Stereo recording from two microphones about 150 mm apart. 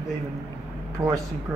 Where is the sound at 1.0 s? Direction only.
30° right (ahead or behind).